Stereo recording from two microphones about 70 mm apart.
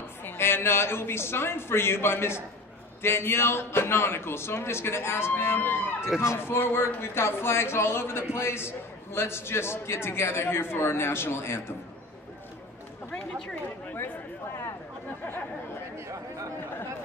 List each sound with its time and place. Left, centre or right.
0.2 s a man's voice: left
6.0 s speech: centre
6.4 s a man's voice: left
13.1 s chatter: centre
13.9 s a sound: left